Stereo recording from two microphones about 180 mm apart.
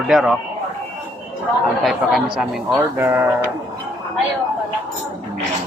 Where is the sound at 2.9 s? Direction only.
15° right (ahead or behind).